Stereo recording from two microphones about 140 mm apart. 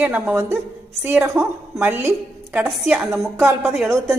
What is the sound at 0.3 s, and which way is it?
A woman's voice, 20° right (ahead or behind).